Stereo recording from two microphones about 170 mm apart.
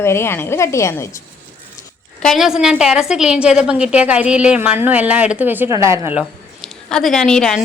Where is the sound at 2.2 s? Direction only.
Centre (ahead or behind); by 6.1 s 15° right (ahead or behind).